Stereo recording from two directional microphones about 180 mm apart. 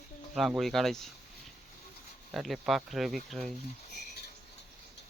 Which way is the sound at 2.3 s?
Centre (ahead or behind).